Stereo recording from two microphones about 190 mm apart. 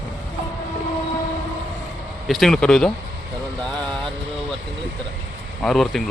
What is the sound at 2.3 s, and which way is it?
Speech, centre (ahead or behind).